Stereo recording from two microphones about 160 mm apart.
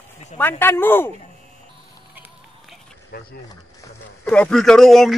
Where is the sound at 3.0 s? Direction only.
80° left.